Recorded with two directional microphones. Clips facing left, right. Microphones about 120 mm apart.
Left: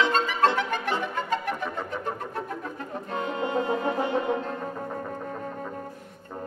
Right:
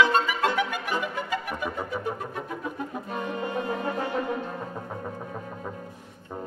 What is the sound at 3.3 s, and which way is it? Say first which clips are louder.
French horn: left 4 dB; 25° left (ahead or behind).